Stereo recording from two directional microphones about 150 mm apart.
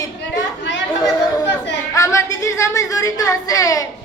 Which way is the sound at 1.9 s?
20° left (ahead or behind).